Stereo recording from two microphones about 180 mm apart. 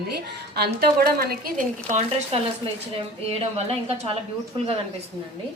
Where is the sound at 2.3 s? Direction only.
35° right (ahead or behind).